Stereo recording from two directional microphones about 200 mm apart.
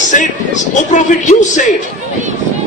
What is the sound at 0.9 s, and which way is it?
Speech, 40° left (ahead or behind).